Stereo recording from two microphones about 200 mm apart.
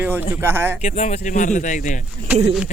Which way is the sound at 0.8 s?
35° left (ahead or behind).